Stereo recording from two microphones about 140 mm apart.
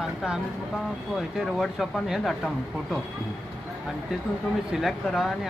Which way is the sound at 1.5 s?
Centre (ahead or behind).